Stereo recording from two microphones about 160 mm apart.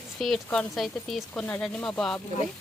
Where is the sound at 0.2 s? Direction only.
5° left (ahead or behind).